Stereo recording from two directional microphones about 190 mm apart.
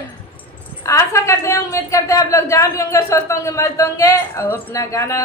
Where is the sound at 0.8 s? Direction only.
15° left (ahead or behind).